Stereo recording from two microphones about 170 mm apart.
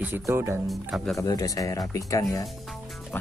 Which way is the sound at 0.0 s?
15° right (ahead or behind).